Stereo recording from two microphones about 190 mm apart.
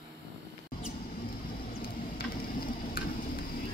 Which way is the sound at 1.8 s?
50° left (ahead or behind).